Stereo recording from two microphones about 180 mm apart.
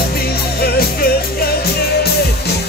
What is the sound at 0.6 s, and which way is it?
Music, 60° left (ahead or behind).